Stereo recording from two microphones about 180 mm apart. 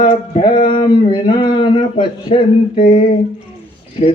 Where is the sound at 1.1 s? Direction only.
25° left (ahead or behind).